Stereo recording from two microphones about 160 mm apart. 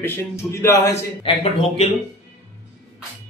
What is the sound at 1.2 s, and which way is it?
Speech, 35° left (ahead or behind).